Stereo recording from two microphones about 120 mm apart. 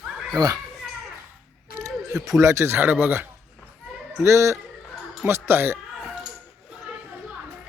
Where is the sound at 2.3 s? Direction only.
25° right (ahead or behind).